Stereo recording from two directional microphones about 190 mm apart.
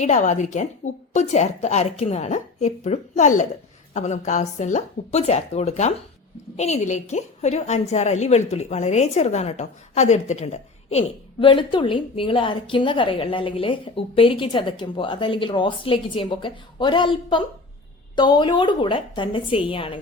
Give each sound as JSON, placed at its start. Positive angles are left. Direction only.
{"t": 0.0, "sound": "a woman's voice", "side_deg": 40}